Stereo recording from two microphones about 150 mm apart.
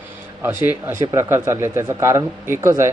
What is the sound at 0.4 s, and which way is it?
A man's voice, 15° right (ahead or behind).